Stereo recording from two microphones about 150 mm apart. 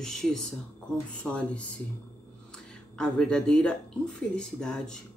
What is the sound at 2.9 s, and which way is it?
Speech, 5° left (ahead or behind).